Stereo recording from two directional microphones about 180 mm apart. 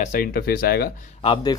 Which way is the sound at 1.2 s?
30° left (ahead or behind).